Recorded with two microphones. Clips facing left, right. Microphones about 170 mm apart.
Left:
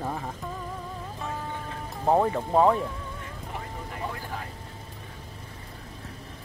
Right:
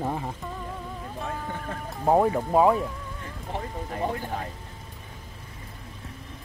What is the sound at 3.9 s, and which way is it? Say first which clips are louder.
Speech: right 6 dB; 35° right (ahead or behind).